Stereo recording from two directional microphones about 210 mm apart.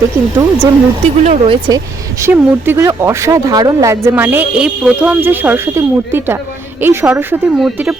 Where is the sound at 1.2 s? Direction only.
35° right (ahead or behind).